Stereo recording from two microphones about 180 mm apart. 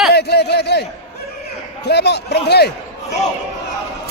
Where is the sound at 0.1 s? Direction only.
65° left (ahead or behind).